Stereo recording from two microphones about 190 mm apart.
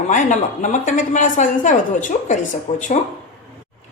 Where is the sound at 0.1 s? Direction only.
40° left (ahead or behind).